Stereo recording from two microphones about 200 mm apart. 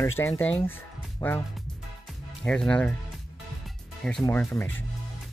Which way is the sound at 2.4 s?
5° left (ahead or behind).